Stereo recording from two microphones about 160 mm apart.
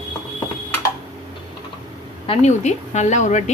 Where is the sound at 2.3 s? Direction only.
45° left (ahead or behind).